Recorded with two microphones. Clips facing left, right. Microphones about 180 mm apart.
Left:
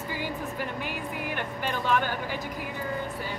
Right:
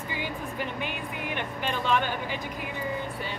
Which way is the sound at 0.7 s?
20° right (ahead or behind).